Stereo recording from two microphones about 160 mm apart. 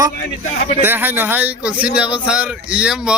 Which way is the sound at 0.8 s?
10° right (ahead or behind).